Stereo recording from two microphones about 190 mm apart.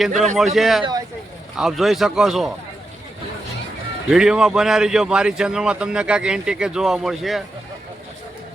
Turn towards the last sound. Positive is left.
turn(degrees=0)  # may be behind; listen again after turning